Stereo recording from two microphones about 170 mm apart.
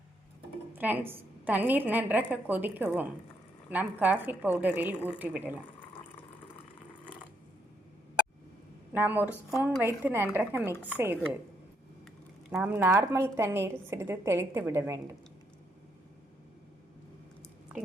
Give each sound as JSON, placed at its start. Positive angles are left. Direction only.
{"t": 0.7, "sound": "a woman's voice", "side_deg": -10}
{"t": 8.9, "sound": "a woman's voice", "side_deg": -10}
{"t": 12.5, "sound": "a woman's voice", "side_deg": -10}